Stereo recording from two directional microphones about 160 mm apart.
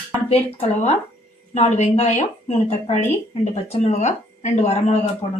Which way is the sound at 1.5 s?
45° left (ahead or behind).